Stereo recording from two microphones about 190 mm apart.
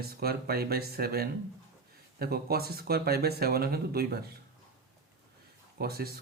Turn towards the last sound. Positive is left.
turn(degrees=-55)  # may be behind; listen again after turning